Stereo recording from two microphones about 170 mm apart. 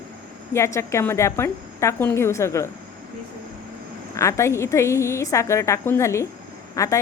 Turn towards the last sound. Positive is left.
turn(degrees=20)  # may be behind; listen again after turning